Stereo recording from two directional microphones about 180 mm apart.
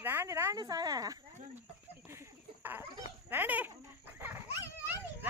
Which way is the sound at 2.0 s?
15° right (ahead or behind).